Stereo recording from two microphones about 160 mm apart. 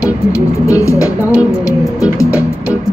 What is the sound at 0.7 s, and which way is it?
Music, 20° left (ahead or behind).